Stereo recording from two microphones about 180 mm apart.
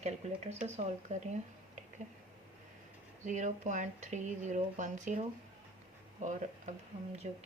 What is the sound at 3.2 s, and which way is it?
Speech, 45° right (ahead or behind).